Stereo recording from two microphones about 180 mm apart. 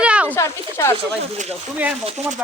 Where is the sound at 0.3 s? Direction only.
15° left (ahead or behind).